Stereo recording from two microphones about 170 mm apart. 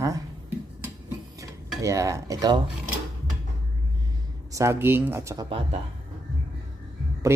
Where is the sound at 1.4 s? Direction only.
20° right (ahead or behind).